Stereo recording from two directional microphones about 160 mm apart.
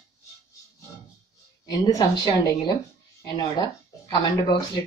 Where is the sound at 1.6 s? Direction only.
25° left (ahead or behind).